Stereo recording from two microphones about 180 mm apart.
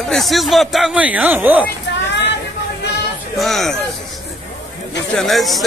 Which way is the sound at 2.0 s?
75° left (ahead or behind).